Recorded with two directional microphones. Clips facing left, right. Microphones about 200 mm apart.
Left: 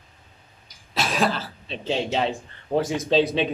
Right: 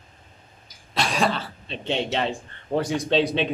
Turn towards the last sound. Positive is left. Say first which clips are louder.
# left 1 dB
turn(degrees=0)  # may be behind; listen again after turning